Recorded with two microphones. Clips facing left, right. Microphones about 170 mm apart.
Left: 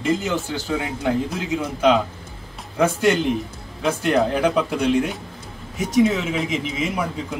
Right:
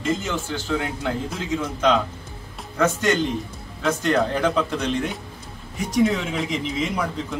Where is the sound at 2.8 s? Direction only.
10° left (ahead or behind).